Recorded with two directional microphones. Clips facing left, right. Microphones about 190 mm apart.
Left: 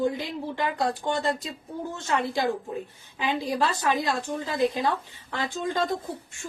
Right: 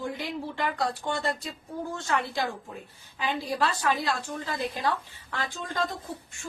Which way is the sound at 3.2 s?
20° left (ahead or behind).